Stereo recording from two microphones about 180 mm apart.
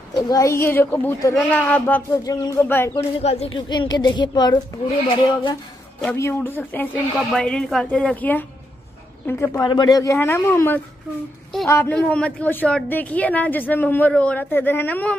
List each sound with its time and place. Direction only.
0.1 s a woman's voice: 20° left (ahead or behind)
2.2 s speech: 20° left (ahead or behind)
2.9 s speech: 35° left (ahead or behind)
3.5 s speech: 25° left (ahead or behind)
6.1 s a woman's voice: 15° left (ahead or behind)
9.6 s a woman's voice: 25° left (ahead or behind)